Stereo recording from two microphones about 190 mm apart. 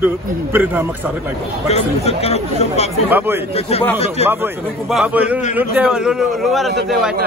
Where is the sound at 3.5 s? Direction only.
30° left (ahead or behind).